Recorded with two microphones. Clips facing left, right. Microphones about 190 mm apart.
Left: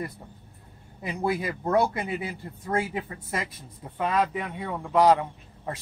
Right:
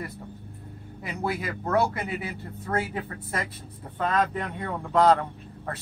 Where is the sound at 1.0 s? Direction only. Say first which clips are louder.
Left 3 dB; 20° left (ahead or behind).